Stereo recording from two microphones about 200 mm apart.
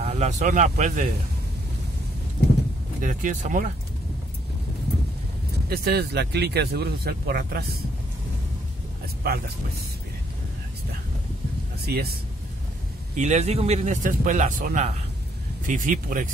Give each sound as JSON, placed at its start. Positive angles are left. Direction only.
{"t": 0.0, "sound": "speech", "side_deg": -35}
{"t": 3.0, "sound": "speech", "side_deg": -40}
{"t": 5.7, "sound": "speech", "side_deg": -50}
{"t": 9.0, "sound": "vehicle", "side_deg": -50}
{"t": 11.8, "sound": "speech", "side_deg": -50}
{"t": 13.1, "sound": "speech", "side_deg": -35}